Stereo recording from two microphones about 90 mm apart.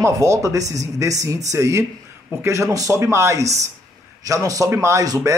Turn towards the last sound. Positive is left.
turn(degrees=-40)  # may be behind; listen again after turning